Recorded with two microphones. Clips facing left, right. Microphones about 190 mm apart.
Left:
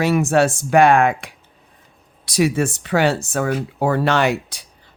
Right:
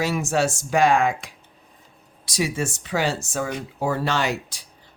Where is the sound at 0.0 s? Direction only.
60° left (ahead or behind).